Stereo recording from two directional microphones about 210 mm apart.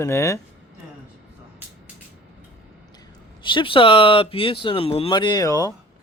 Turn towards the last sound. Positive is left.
turn(degrees=15)  # may be behind; listen again after turning